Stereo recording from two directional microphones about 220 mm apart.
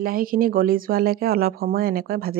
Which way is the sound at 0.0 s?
40° right (ahead or behind).